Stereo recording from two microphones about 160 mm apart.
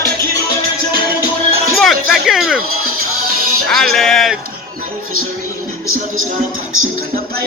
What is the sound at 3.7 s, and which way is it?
Music, centre (ahead or behind).